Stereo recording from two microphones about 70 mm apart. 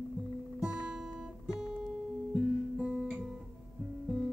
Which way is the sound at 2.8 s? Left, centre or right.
Centre.